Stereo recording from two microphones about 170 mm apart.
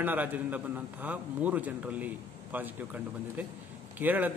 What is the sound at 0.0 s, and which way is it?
A man's voice, 10° right (ahead or behind).